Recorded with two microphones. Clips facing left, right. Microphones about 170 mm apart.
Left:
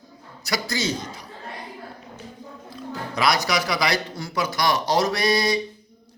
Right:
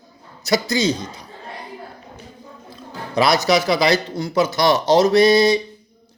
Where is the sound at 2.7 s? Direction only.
25° right (ahead or behind).